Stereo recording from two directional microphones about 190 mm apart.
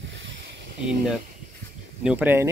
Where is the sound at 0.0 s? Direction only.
75° right (ahead or behind).